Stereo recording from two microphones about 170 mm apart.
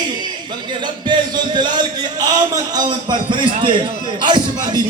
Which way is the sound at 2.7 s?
25° right (ahead or behind).